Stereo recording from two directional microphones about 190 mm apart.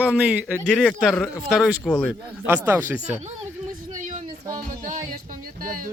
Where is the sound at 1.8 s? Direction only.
5° left (ahead or behind).